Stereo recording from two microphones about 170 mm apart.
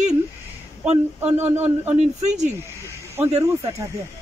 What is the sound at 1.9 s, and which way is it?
Speech, 45° right (ahead or behind).